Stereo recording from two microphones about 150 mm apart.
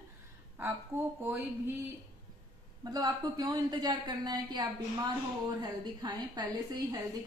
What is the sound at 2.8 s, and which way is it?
A woman's voice, 25° right (ahead or behind).